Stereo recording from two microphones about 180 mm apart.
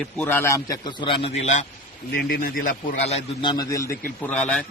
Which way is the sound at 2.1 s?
60° left (ahead or behind).